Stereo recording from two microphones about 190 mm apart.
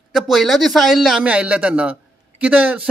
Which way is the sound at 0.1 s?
Centre (ahead or behind).